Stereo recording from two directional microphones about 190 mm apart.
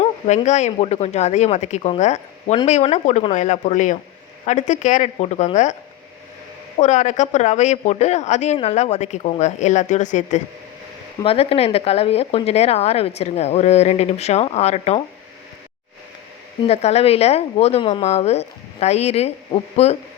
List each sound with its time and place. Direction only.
0.0 s speech: 40° left (ahead or behind)
6.7 s speech: 40° left (ahead or behind)
16.6 s speech: 35° left (ahead or behind)